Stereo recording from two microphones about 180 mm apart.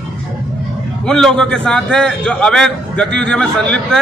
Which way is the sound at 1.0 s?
5° left (ahead or behind).